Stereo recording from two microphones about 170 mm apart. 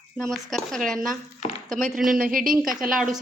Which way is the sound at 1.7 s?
50° right (ahead or behind).